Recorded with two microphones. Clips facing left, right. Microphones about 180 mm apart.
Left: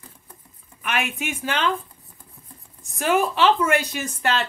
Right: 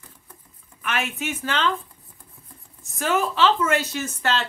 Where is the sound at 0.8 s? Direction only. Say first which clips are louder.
Left 1 dB; 15° left (ahead or behind).